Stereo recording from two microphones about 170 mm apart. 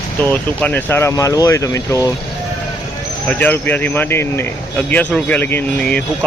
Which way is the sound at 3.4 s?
10° left (ahead or behind).